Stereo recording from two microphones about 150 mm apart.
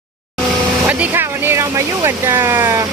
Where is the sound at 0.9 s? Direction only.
10° right (ahead or behind).